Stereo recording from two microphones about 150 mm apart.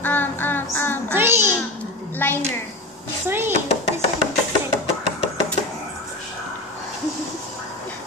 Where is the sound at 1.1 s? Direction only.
15° right (ahead or behind).